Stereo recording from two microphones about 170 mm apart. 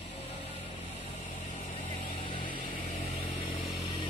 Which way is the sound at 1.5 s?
35° left (ahead or behind).